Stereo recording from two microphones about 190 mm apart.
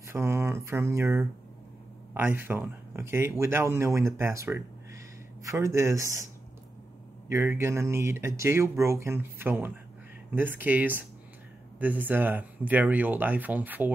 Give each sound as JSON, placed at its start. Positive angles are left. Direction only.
{"t": 0.0, "sound": "a sound", "side_deg": -15}
{"t": 2.1, "sound": "speech", "side_deg": -10}
{"t": 7.2, "sound": "speech", "side_deg": -15}